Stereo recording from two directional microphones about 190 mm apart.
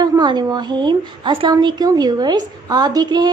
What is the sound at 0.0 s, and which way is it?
A woman's voice, 20° right (ahead or behind).